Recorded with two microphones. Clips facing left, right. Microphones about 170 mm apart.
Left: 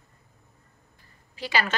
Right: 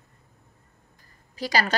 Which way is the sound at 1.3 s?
40° right (ahead or behind).